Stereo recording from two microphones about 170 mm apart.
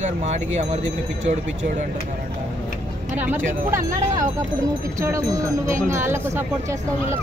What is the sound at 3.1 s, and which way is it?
Speech, 10° right (ahead or behind).